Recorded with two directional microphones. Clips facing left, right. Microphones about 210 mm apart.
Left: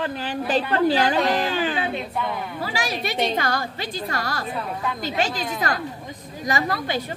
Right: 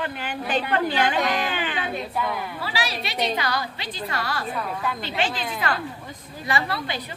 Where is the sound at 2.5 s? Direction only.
45° left (ahead or behind).